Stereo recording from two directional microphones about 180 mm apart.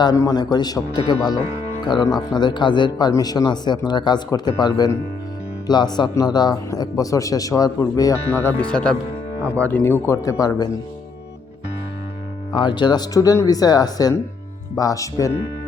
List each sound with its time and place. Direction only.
0.0 s speech: 20° left (ahead or behind)
12.5 s speech: 25° left (ahead or behind)